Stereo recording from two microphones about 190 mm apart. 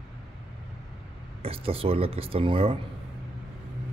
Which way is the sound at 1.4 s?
30° right (ahead or behind).